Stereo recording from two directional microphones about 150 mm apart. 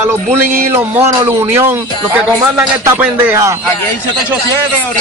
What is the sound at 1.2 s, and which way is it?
Speech, 15° right (ahead or behind).